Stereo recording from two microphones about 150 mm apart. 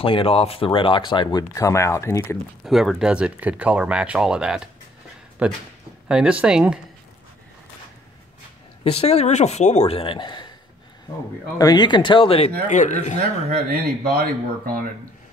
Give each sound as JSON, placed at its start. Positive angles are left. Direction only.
{"t": 0.0, "sound": "speech", "side_deg": 35}
{"t": 2.6, "sound": "speech", "side_deg": 0}
{"t": 8.8, "sound": "speech", "side_deg": 40}
{"t": 11.5, "sound": "speech", "side_deg": 25}
{"t": 12.6, "sound": "speech", "side_deg": 55}
{"t": 13.7, "sound": "speech", "side_deg": -80}